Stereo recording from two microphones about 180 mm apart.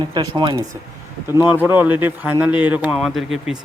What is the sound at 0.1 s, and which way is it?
Speech, 25° right (ahead or behind).